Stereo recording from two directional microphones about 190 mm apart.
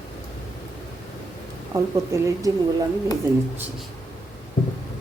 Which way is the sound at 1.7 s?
15° right (ahead or behind).